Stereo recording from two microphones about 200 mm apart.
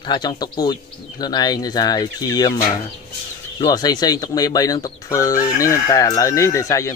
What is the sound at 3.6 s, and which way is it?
Speech, 20° left (ahead or behind).